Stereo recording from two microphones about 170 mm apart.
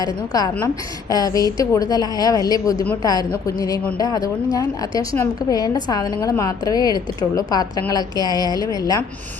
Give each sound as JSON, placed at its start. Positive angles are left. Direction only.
{"t": 0.3, "sound": "a woman's voice", "side_deg": 20}